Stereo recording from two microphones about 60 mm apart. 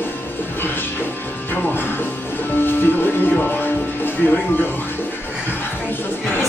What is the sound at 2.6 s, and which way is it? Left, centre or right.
Music, left.